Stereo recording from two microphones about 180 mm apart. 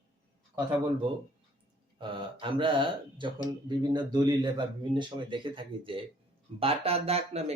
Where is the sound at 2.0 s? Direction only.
30° right (ahead or behind).